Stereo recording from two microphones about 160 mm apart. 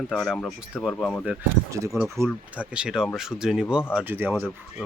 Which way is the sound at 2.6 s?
5° right (ahead or behind).